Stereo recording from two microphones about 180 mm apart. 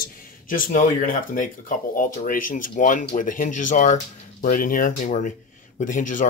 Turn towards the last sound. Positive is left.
turn(degrees=45)  # may be behind; listen again after turning